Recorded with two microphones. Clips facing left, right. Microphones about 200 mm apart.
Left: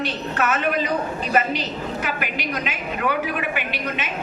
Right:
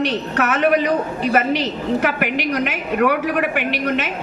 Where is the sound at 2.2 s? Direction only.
60° right (ahead or behind).